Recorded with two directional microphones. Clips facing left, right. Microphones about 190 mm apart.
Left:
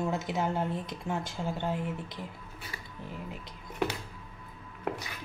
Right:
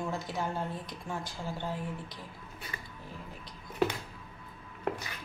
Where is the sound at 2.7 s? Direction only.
10° left (ahead or behind).